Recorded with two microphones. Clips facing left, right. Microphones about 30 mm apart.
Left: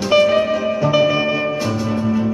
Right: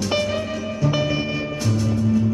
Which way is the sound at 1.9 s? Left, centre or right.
Left.